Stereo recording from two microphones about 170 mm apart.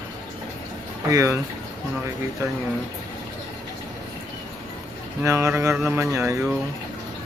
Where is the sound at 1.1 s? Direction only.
20° right (ahead or behind).